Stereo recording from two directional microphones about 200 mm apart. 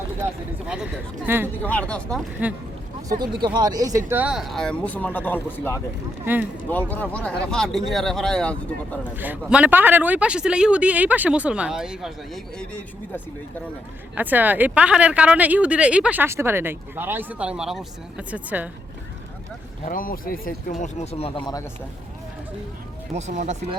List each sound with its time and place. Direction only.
1.3 s speech: 10° right (ahead or behind)
1.6 s speech: 5° left (ahead or behind)
3.1 s speech: 20° right (ahead or behind); by 5.8 s 10° left (ahead or behind)
6.2 s speech: 10° right (ahead or behind)
6.7 s speech: 10° left (ahead or behind)
9.1 s speech: 10° right (ahead or behind)
14.2 s speech: 10° right (ahead or behind)
19.8 s speech: 45° left (ahead or behind); by 21.6 s 25° left (ahead or behind)
23.1 s speech: 35° right (ahead or behind)